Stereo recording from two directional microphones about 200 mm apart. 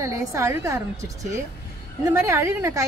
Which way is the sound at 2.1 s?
15° right (ahead or behind).